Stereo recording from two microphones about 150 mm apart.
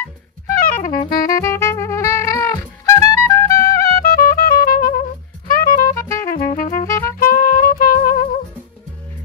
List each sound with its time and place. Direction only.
0.5 s music: 65° left (ahead or behind)
1.2 s music: 20° left (ahead or behind)
4.0 s music: 70° left (ahead or behind)
5.9 s music: 20° left (ahead or behind)
6.2 s music: 65° left (ahead or behind)
6.9 s music: 20° left (ahead or behind)
7.2 s music: 75° left (ahead or behind)